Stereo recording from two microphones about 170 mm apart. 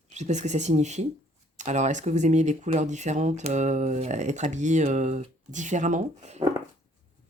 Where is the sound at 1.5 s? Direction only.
45° right (ahead or behind).